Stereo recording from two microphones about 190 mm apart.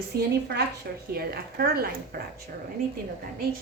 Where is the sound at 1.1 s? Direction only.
55° right (ahead or behind).